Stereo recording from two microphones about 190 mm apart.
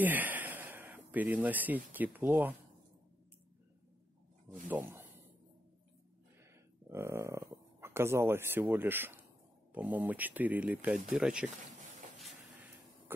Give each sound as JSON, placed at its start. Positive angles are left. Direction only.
{"t": 0.0, "sound": "speech", "side_deg": -10}
{"t": 4.6, "sound": "speech", "side_deg": -10}
{"t": 6.9, "sound": "speech", "side_deg": -15}